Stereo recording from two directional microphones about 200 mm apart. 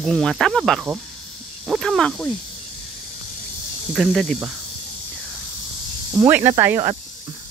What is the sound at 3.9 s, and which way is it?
Speech, centre (ahead or behind).